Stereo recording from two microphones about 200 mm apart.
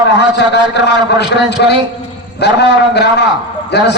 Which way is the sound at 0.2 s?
55° left (ahead or behind).